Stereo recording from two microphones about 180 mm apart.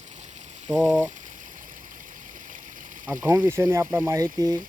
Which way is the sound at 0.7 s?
15° right (ahead or behind).